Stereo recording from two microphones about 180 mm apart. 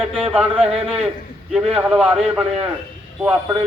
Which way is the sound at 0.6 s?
35° right (ahead or behind).